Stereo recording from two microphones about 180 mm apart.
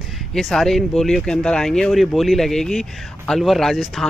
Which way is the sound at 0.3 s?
Centre (ahead or behind).